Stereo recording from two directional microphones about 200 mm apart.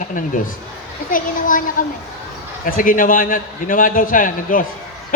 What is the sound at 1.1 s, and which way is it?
Speech, 40° left (ahead or behind).